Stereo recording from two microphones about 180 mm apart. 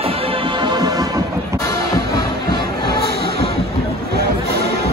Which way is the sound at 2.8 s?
60° right (ahead or behind).